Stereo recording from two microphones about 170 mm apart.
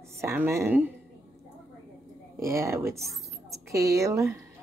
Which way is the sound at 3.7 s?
20° right (ahead or behind).